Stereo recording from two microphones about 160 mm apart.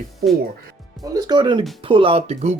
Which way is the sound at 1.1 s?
25° right (ahead or behind).